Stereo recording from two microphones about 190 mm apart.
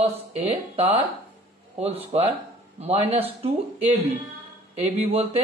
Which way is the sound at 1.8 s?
30° right (ahead or behind).